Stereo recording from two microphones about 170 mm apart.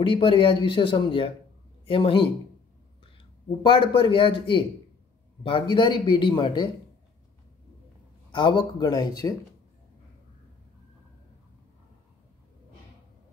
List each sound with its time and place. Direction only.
0.0 s a man's voice: 30° left (ahead or behind)
3.6 s a man's voice: 30° left (ahead or behind)
8.3 s a man's voice: 30° left (ahead or behind)